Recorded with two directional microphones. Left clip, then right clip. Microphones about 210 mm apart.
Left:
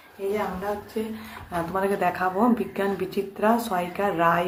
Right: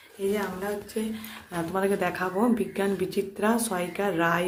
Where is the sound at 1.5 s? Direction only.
25° right (ahead or behind).